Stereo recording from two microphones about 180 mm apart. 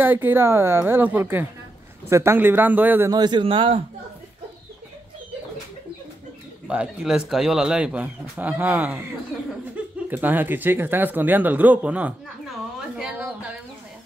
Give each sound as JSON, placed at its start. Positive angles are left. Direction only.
{"t": 0.0, "sound": "speech", "side_deg": -10}
{"t": 3.1, "sound": "a man's voice", "side_deg": -25}
{"t": 6.7, "sound": "speech", "side_deg": -5}